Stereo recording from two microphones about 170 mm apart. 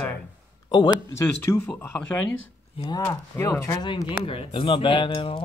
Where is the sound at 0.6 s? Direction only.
20° left (ahead or behind).